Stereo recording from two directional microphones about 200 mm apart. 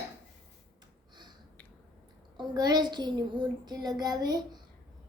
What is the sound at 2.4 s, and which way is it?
A child's voice, 20° right (ahead or behind).